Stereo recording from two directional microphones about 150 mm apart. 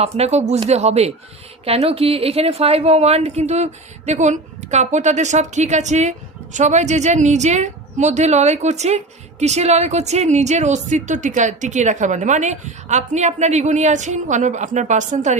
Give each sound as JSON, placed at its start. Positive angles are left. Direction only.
{"t": 0.0, "sound": "a woman's voice", "side_deg": -45}